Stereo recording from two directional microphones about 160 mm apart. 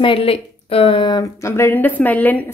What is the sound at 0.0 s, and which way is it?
A woman's voice, 35° left (ahead or behind).